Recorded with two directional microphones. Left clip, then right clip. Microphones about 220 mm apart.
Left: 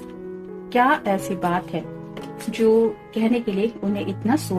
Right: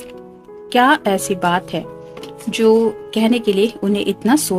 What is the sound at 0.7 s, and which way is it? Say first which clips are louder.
Speech: right 5 dB; 45° right (ahead or behind).